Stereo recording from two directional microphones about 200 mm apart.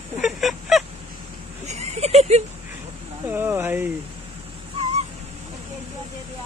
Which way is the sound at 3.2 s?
10° right (ahead or behind).